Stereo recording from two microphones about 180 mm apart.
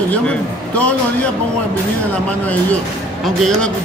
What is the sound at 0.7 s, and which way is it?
Speech, 5° left (ahead or behind).